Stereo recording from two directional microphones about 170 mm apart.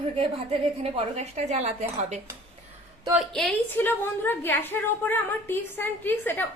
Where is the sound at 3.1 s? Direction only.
Centre (ahead or behind).